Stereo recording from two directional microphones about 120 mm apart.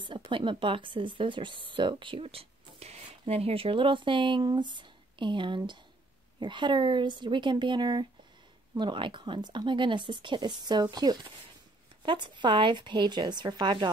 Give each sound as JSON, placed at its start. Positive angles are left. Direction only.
{"t": 0.0, "sound": "speech", "side_deg": -45}